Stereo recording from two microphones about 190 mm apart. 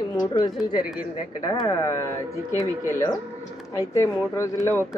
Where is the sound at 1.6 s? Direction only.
15° left (ahead or behind).